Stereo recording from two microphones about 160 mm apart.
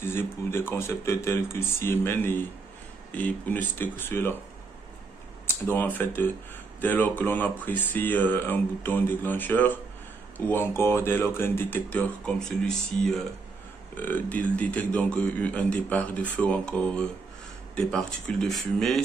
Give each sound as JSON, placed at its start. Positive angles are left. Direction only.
{"t": 0.0, "sound": "a man's voice", "side_deg": 15}
{"t": 5.7, "sound": "a man's voice", "side_deg": 10}